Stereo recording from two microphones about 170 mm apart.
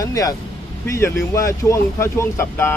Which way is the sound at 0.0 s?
20° left (ahead or behind).